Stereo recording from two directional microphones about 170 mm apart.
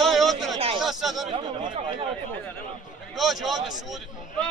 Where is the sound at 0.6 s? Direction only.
35° right (ahead or behind).